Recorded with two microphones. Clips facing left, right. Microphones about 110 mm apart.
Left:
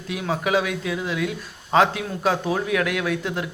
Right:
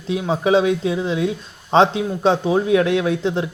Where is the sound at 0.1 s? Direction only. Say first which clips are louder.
Right 6 dB; 25° right (ahead or behind).